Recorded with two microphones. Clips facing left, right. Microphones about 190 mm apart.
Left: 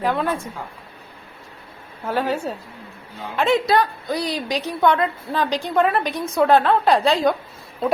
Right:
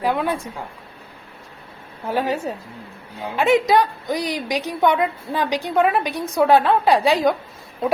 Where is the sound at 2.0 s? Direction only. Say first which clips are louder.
Even; 15° right (ahead or behind).